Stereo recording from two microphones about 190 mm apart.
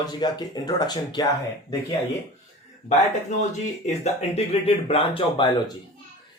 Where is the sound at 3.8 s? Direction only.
35° left (ahead or behind).